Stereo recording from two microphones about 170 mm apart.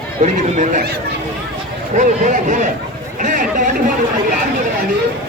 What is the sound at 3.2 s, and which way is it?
Chatter, 50° right (ahead or behind).